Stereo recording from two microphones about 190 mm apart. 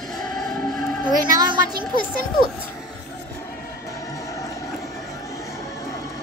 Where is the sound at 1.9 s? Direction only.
50° left (ahead or behind).